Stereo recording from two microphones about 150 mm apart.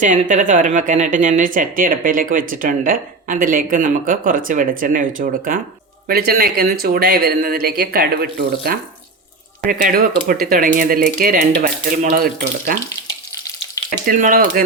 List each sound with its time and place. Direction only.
0.0 s a woman's voice: 60° right (ahead or behind)
6.1 s speech: 85° right
9.6 s speech: 75° right (ahead or behind)
14.0 s speech: 70° right (ahead or behind)